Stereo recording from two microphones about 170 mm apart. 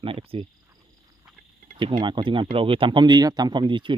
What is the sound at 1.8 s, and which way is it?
Speech, 30° right (ahead or behind).